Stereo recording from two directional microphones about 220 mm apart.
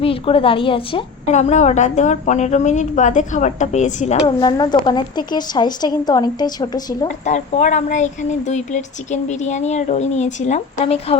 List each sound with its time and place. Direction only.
0.0 s a woman's voice: 25° left (ahead or behind)
4.3 s a woman's voice: 20° left (ahead or behind)
7.3 s a woman's voice: 30° left (ahead or behind)